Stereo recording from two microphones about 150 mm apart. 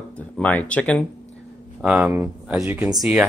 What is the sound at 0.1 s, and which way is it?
Speech, 10° left (ahead or behind).